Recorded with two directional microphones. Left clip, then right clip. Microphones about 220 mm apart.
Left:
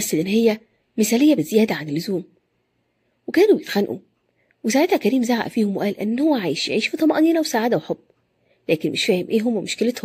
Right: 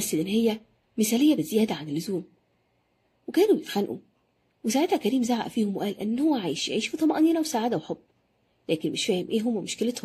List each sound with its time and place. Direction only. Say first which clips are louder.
0.0 s a woman's voice: left 7 dB; 25° left (ahead or behind)
3.3 s a woman's voice: left 6 dB; 25° left (ahead or behind)